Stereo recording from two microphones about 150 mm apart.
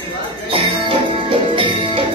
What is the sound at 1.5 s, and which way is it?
Music, 35° right (ahead or behind).